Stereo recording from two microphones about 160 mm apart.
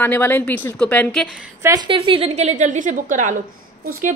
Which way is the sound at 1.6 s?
25° right (ahead or behind).